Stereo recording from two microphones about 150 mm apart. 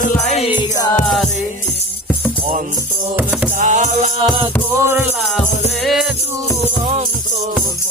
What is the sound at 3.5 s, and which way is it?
Music, 55° right (ahead or behind).